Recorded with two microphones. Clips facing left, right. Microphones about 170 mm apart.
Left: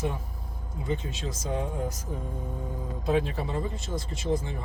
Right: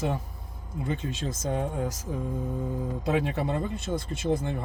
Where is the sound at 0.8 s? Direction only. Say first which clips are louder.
Right 1 dB; 50° right (ahead or behind); by 1.9 s 65° right (ahead or behind).